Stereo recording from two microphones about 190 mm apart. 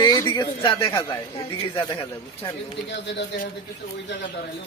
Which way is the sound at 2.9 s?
65° left (ahead or behind).